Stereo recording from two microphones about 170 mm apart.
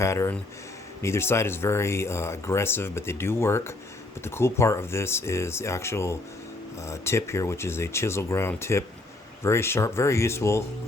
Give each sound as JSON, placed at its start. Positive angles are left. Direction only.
{"t": 0.0, "sound": "speech", "side_deg": 15}